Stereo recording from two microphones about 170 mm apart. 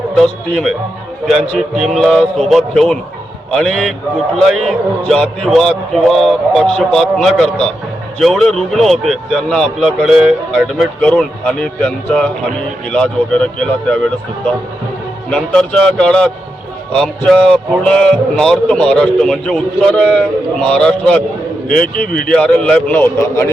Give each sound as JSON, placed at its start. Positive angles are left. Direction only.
{"t": 0.2, "sound": "a man's voice", "side_deg": 0}
{"t": 15.3, "sound": "a man's voice", "side_deg": 5}
{"t": 21.9, "sound": "speech", "side_deg": 55}
{"t": 22.3, "sound": "a man's voice", "side_deg": 5}